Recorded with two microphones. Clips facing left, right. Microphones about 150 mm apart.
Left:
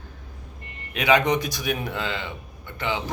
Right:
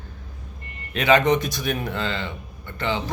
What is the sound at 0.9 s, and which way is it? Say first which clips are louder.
A man's voice: right 2 dB; 10° left (ahead or behind).